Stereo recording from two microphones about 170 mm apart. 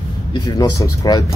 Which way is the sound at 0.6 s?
25° left (ahead or behind).